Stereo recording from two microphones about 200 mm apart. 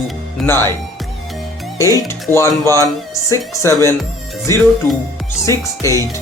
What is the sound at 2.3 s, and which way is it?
Speech, 15° right (ahead or behind).